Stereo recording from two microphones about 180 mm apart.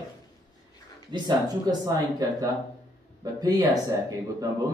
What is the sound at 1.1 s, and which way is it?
Speech, 25° right (ahead or behind).